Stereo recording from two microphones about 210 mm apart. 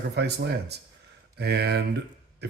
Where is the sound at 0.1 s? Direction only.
50° right (ahead or behind).